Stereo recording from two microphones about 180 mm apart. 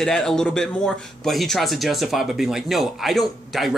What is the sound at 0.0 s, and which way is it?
Speech, 5° left (ahead or behind).